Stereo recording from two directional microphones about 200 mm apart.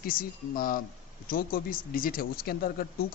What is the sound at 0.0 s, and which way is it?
Speech, 45° left (ahead or behind).